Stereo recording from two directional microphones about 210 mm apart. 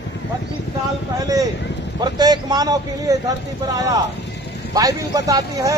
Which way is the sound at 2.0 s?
20° right (ahead or behind).